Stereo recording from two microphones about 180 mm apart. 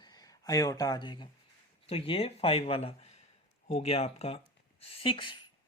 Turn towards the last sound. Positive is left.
turn(degrees=25)  # may be behind; listen again after turning